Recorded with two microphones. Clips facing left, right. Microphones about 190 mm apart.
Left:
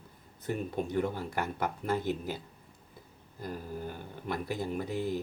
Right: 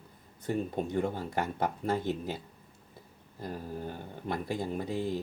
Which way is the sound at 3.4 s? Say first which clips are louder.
Right 1 dB; 25° right (ahead or behind).